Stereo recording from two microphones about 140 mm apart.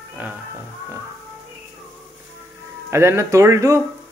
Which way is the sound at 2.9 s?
20° right (ahead or behind).